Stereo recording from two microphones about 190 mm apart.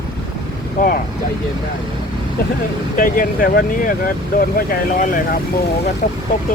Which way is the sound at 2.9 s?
45° left (ahead or behind).